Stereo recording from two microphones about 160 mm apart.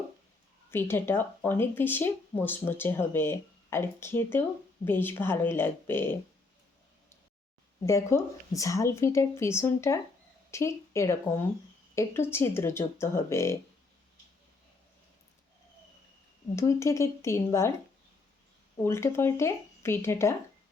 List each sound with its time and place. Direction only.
0.7 s speech: 15° left (ahead or behind)
7.9 s speech: 20° left (ahead or behind)
16.6 s speech: 20° left (ahead or behind)
18.8 s speech: 15° left (ahead or behind)